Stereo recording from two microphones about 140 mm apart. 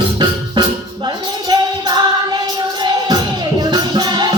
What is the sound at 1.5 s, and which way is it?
Music, 30° right (ahead or behind).